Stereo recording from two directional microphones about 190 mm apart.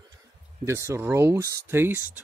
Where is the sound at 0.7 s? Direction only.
15° right (ahead or behind).